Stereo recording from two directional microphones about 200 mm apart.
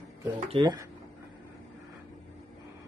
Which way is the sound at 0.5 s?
25° right (ahead or behind).